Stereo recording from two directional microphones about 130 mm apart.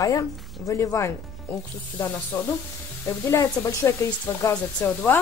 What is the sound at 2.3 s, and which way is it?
Speech, 20° left (ahead or behind).